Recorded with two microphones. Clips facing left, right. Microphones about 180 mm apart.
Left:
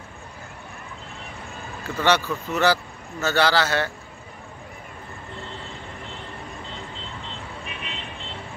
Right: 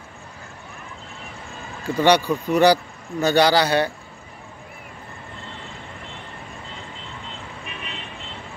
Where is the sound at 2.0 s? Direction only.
15° right (ahead or behind).